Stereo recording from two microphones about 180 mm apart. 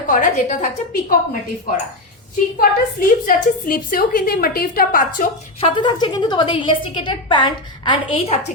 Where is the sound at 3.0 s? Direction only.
50° left (ahead or behind).